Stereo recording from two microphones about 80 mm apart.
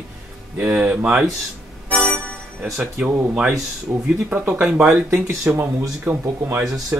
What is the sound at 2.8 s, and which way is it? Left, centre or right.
Speech, centre.